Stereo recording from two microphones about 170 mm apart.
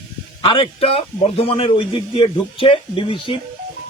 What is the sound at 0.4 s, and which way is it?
A man's voice, 30° left (ahead or behind).